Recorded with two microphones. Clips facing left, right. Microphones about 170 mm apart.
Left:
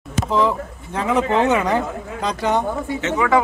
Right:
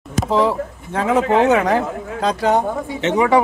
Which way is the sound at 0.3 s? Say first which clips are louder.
Right 2 dB; 10° right (ahead or behind).